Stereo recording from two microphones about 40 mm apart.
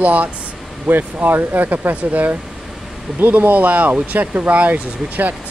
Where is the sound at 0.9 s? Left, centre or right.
Right.